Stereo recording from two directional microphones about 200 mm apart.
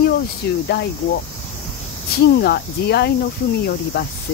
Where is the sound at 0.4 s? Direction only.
55° left (ahead or behind).